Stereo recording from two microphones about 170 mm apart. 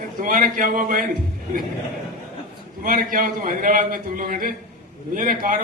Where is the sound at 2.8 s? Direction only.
50° right (ahead or behind).